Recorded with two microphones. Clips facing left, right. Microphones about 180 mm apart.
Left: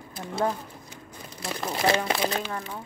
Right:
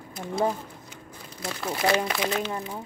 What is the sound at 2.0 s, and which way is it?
Speech, 30° left (ahead or behind).